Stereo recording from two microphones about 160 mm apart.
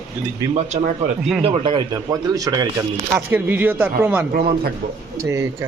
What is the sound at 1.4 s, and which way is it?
A man's voice, 30° right (ahead or behind).